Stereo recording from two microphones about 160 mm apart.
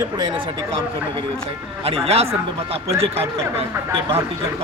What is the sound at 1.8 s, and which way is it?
Speech, 40° right (ahead or behind).